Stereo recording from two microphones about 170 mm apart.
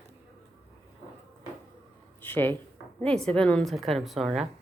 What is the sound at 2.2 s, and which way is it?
Speech, 10° left (ahead or behind).